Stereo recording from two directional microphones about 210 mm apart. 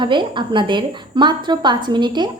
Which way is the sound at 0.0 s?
20° right (ahead or behind).